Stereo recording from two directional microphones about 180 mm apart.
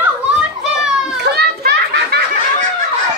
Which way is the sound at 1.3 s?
65° right (ahead or behind).